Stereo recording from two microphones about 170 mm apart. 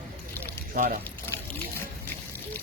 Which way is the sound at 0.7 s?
50° right (ahead or behind).